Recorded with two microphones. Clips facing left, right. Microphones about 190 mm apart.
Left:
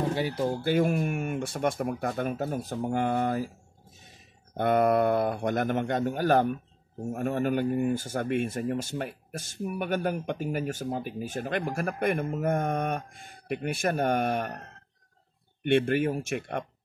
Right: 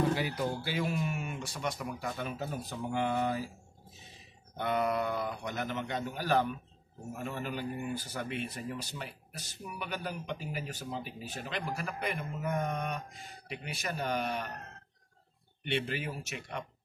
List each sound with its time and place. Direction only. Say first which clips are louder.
0.1 s speech: left 4 dB; 30° left (ahead or behind)
0.7 s speech: left 8 dB; 50° left (ahead or behind)
4.6 s speech: left 8 dB; 55° left (ahead or behind)
15.6 s speech: left 11 dB; 50° left (ahead or behind)